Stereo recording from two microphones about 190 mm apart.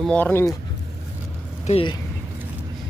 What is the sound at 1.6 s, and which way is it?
Speech, 30° left (ahead or behind).